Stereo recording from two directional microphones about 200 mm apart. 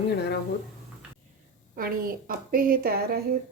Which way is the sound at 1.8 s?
45° right (ahead or behind).